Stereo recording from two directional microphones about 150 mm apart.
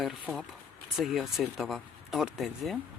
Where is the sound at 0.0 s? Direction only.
Centre (ahead or behind).